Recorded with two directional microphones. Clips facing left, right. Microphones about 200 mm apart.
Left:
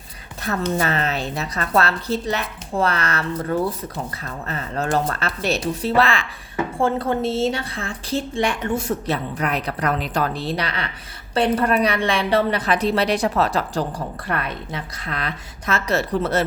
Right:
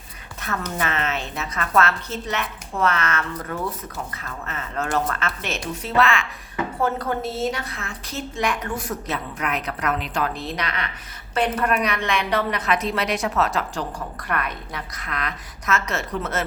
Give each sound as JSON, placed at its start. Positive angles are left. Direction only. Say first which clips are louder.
{"t": 0.4, "sound": "a woman's voice", "louder": "left 5 dB", "side_deg": 35}